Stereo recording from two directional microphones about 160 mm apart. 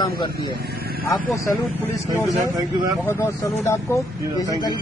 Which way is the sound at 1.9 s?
20° left (ahead or behind).